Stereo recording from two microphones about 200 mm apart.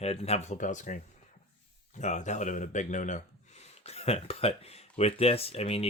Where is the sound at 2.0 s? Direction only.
35° left (ahead or behind).